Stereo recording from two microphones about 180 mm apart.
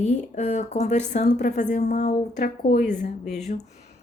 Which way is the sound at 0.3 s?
40° left (ahead or behind).